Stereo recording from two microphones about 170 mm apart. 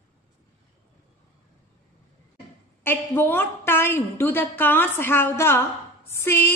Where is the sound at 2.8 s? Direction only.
15° left (ahead or behind).